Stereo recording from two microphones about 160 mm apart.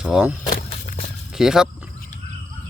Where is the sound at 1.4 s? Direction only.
5° right (ahead or behind).